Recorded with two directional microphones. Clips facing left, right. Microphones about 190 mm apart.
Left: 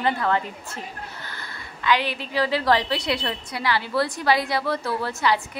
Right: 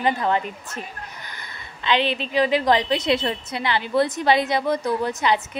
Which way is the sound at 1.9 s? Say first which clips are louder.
Right 2 dB; 25° right (ahead or behind).